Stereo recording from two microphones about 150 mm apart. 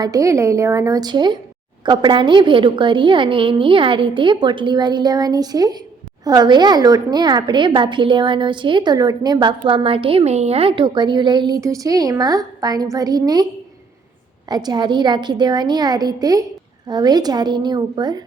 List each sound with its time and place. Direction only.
0.0 s a woman's voice: 20° right (ahead or behind)
14.5 s a woman's voice: 30° right (ahead or behind)